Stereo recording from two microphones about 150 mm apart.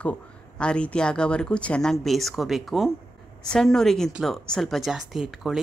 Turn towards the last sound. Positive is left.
turn(degrees=-5)  # may be behind; listen again after turning